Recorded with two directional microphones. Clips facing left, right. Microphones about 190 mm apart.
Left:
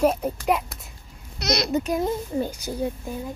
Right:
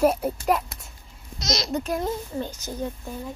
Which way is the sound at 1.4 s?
60° left (ahead or behind).